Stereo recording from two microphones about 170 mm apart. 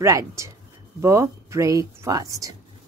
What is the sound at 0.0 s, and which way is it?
Speech, 15° right (ahead or behind).